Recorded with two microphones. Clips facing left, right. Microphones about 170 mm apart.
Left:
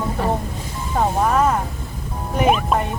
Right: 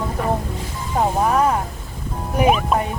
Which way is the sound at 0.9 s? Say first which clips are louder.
Even; 10° right (ahead or behind).